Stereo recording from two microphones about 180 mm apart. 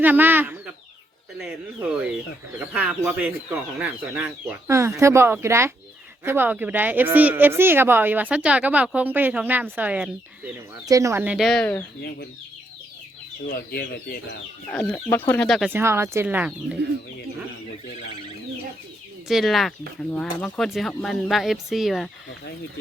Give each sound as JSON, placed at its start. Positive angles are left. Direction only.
{"t": 0.0, "sound": "speech", "side_deg": -10}
{"t": 10.8, "sound": "speech", "side_deg": -20}
{"t": 11.3, "sound": "speech", "side_deg": 0}
{"t": 13.7, "sound": "speech", "side_deg": 60}
{"t": 14.7, "sound": "speech", "side_deg": 5}
{"t": 15.7, "sound": "speech", "side_deg": -15}
{"t": 19.3, "sound": "speech", "side_deg": 0}